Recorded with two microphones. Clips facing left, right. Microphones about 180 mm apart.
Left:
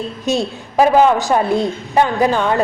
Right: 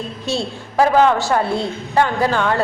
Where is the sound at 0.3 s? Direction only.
15° left (ahead or behind).